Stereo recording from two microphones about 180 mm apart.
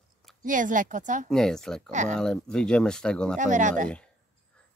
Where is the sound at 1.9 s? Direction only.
40° right (ahead or behind).